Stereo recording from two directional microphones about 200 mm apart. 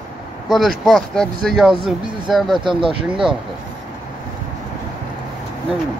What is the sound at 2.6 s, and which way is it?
Speech, 25° right (ahead or behind).